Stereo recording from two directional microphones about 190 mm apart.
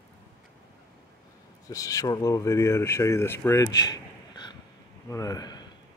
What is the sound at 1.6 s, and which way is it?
A man's voice, 15° left (ahead or behind).